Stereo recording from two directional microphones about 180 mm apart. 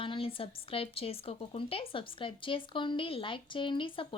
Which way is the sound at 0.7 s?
30° left (ahead or behind).